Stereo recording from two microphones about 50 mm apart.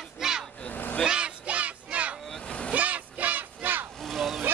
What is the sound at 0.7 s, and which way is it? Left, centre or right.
Vehicle, left.